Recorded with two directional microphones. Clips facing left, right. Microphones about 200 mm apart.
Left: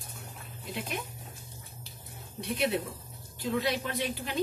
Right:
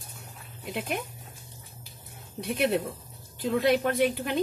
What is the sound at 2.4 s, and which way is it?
Speech, 50° right (ahead or behind).